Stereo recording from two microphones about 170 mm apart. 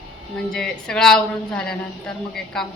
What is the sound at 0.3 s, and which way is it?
A woman's voice, 5° left (ahead or behind).